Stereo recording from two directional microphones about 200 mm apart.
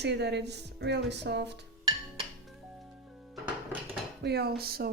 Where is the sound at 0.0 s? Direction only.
60° right (ahead or behind).